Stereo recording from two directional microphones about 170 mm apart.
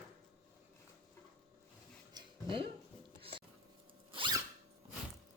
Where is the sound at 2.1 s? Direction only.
30° right (ahead or behind).